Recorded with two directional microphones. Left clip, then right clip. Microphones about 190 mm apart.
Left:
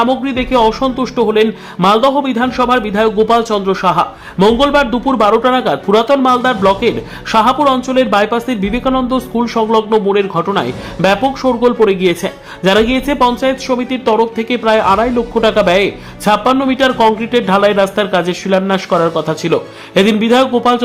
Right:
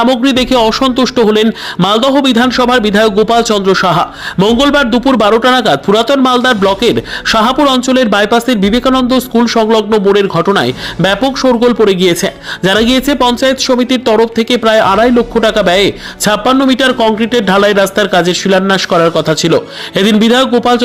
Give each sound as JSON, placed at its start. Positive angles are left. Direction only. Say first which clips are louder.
{"t": 0.0, "sound": "speech", "louder": "right 4 dB", "side_deg": -30}